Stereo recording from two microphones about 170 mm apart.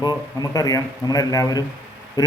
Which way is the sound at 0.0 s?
20° left (ahead or behind).